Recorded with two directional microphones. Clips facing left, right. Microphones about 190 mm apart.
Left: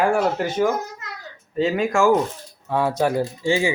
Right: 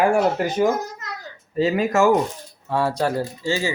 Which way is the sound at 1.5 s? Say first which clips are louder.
Right 1 dB; 5° right (ahead or behind).